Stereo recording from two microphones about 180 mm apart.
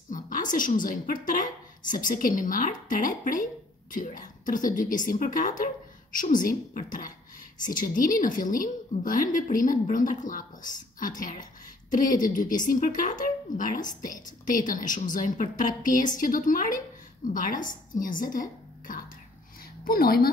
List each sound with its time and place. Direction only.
0.1 s a woman's voice: 45° left (ahead or behind)